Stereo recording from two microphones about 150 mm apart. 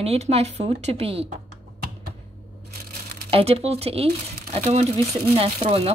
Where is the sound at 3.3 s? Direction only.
40° right (ahead or behind).